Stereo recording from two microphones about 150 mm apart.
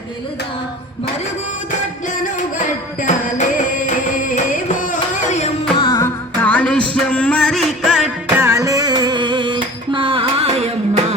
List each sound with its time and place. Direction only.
2.2 s music: 60° left (ahead or behind)
5.7 s music: 35° left (ahead or behind)
6.4 s music: 10° left (ahead or behind)
8.4 s singing: 20° right (ahead or behind); by 11.0 s 45° right (ahead or behind)